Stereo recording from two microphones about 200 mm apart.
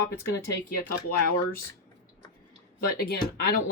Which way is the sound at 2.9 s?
50° left (ahead or behind).